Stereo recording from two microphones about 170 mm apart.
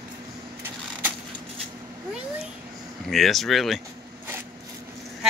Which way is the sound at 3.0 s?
Centre (ahead or behind).